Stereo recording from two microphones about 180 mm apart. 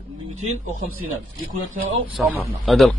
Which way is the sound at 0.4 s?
45° right (ahead or behind).